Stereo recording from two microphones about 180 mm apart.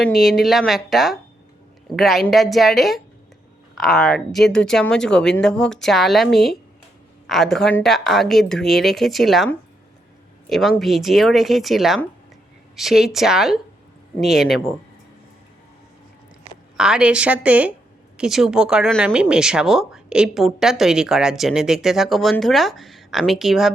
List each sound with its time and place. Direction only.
0.2 s speech: centre (ahead or behind)
10.5 s speech: centre (ahead or behind)
16.7 s a woman's voice: 5° right (ahead or behind)